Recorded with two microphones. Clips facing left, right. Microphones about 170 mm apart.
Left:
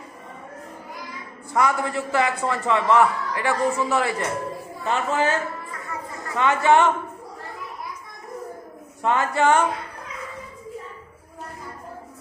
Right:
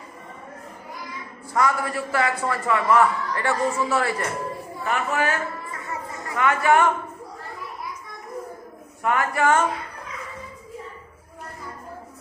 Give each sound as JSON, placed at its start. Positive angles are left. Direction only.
{"t": 1.5, "sound": "a man's voice", "side_deg": 20}
{"t": 5.9, "sound": "chatter", "side_deg": -25}
{"t": 6.3, "sound": "speech", "side_deg": 25}
{"t": 9.0, "sound": "speech", "side_deg": 25}